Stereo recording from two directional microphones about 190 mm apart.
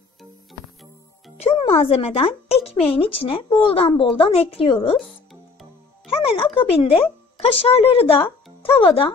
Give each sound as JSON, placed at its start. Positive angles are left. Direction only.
{"t": 1.4, "sound": "a woman's voice", "side_deg": 30}
{"t": 6.2, "sound": "a woman's voice", "side_deg": 30}